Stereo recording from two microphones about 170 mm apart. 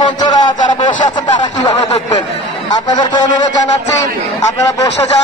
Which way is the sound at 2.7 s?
25° left (ahead or behind).